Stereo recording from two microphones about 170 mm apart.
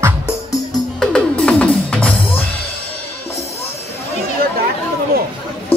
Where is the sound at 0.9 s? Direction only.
Centre (ahead or behind).